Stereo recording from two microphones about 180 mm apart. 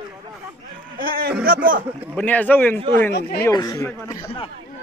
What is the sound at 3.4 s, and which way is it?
Speech, 20° left (ahead or behind).